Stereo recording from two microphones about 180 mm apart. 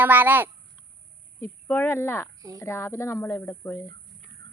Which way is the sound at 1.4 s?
10° left (ahead or behind).